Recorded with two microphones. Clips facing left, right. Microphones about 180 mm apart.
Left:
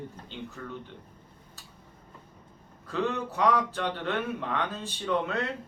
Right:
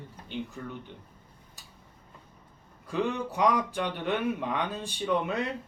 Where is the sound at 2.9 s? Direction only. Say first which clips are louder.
Even; 15° right (ahead or behind).